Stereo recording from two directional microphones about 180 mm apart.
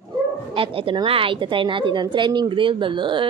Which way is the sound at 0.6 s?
30° right (ahead or behind).